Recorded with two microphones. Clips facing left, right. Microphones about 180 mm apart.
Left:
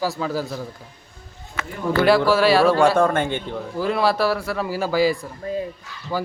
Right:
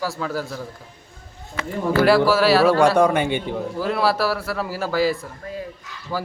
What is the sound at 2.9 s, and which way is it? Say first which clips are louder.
Speech: right 2 dB; 15° right (ahead or behind).